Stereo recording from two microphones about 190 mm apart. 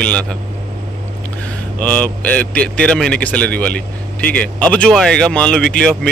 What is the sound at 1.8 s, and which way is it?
A man's voice, 5° left (ahead or behind).